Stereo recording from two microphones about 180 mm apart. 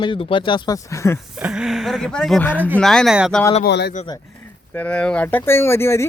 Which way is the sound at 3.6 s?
65° left (ahead or behind).